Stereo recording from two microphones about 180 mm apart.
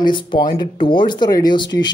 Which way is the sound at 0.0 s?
25° left (ahead or behind).